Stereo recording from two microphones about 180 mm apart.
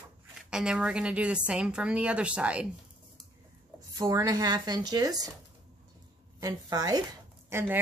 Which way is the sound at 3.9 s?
20° right (ahead or behind).